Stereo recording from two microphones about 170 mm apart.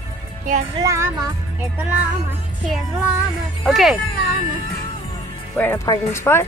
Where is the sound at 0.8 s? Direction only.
20° right (ahead or behind).